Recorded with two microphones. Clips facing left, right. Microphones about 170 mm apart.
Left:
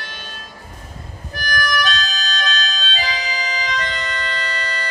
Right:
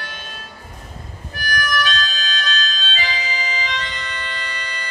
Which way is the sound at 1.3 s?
40° left (ahead or behind).